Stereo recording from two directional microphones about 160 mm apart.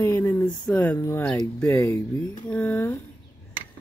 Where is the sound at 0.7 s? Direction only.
10° left (ahead or behind).